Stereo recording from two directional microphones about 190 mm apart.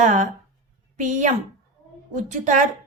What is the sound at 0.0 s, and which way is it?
A woman's voice, 40° right (ahead or behind).